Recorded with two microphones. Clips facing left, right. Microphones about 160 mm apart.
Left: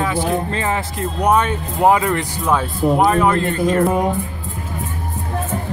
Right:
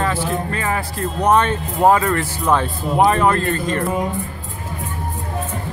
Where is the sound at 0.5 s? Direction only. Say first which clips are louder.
Left 1 dB; 25° left (ahead or behind).